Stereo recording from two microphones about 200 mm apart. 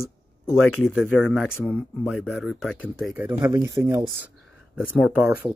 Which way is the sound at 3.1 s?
15° right (ahead or behind).